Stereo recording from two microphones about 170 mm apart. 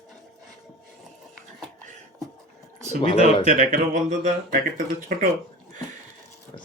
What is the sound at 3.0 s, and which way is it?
Speech, 35° left (ahead or behind).